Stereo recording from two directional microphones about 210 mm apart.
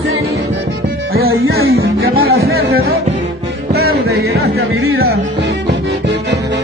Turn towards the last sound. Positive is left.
turn(degrees=-90)